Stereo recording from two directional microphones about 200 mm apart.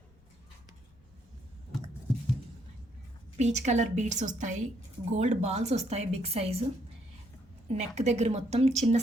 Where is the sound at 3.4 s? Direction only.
35° right (ahead or behind).